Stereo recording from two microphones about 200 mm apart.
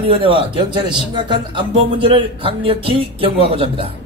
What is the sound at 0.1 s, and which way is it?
Speech, 25° right (ahead or behind).